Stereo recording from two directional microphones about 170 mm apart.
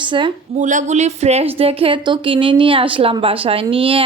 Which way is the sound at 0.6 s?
45° right (ahead or behind).